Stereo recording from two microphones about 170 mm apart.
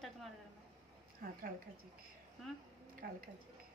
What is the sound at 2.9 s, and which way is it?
Speech, 60° right (ahead or behind).